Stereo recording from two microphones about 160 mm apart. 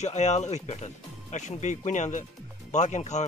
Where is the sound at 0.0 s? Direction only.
45° left (ahead or behind).